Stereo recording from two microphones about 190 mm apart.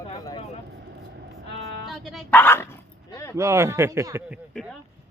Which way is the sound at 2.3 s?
10° left (ahead or behind).